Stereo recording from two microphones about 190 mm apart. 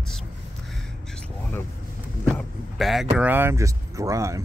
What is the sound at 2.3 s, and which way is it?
Vehicle, centre (ahead or behind).